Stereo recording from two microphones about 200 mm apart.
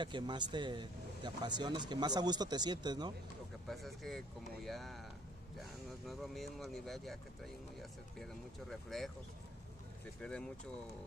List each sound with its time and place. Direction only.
0.0 s speech: 25° right (ahead or behind)
3.6 s speech: centre (ahead or behind)
6.0 s speech: centre (ahead or behind)
8.2 s speech: centre (ahead or behind)
10.2 s speech: 5° left (ahead or behind)